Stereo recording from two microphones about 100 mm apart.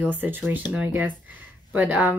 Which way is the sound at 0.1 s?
20° right (ahead or behind).